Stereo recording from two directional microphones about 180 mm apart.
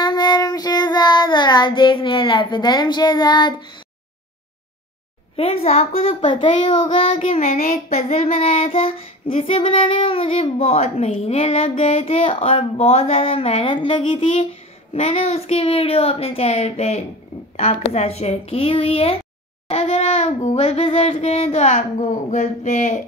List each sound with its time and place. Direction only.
0.0 s child singing: 20° left (ahead or behind)
5.3 s child singing: 35° left (ahead or behind)
7.2 s child singing: 40° left (ahead or behind)
7.9 s child singing: 35° left (ahead or behind)
14.3 s child singing: 35° left (ahead or behind)